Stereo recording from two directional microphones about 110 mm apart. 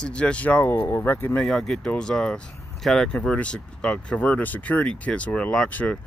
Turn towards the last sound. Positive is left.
turn(degrees=10)  # may be behind; listen again after turning